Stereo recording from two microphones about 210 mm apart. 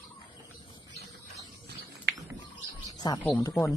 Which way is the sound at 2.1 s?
55° right (ahead or behind).